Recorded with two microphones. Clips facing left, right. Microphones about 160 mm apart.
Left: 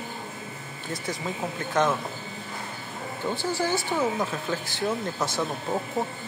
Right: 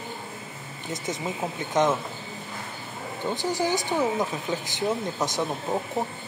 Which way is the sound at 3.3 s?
15° right (ahead or behind).